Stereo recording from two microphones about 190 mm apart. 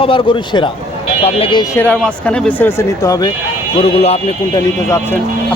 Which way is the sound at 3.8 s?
35° left (ahead or behind).